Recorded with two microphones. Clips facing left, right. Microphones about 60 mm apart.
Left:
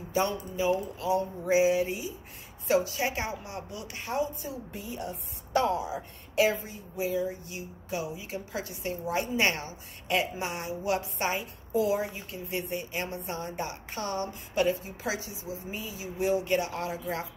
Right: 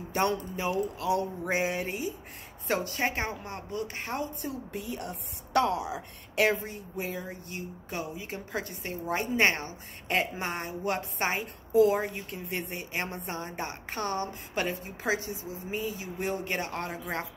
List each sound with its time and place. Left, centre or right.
0.1 s a woman's voice: right